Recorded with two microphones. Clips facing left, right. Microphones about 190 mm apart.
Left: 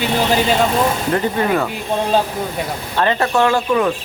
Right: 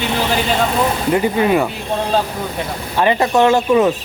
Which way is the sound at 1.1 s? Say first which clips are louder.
Right 3 dB; 10° right (ahead or behind).